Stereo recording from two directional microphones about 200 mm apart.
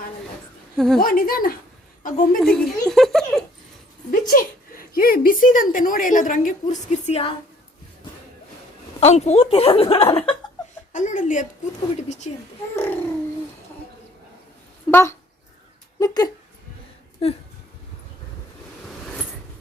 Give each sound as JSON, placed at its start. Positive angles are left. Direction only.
{"t": 0.9, "sound": "speech", "side_deg": 45}
{"t": 2.4, "sound": "a sound", "side_deg": 5}
{"t": 4.1, "sound": "speech", "side_deg": 45}
{"t": 6.9, "sound": "a woman's voice", "side_deg": 30}
{"t": 9.0, "sound": "a woman's voice", "side_deg": 35}
{"t": 10.9, "sound": "speech", "side_deg": 40}
{"t": 12.7, "sound": "a child's voice", "side_deg": 10}
{"t": 14.8, "sound": "speech", "side_deg": 15}